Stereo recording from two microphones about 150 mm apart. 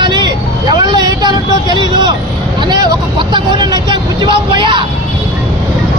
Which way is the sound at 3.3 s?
30° right (ahead or behind).